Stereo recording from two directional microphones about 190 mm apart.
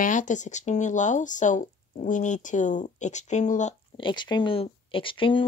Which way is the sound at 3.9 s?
25° left (ahead or behind).